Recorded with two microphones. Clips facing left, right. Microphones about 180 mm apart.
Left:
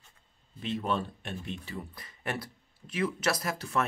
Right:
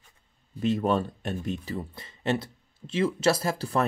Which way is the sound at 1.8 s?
25° right (ahead or behind).